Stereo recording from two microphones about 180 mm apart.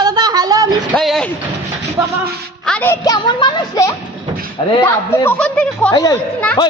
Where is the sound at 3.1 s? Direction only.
25° left (ahead or behind); by 5.9 s 5° left (ahead or behind).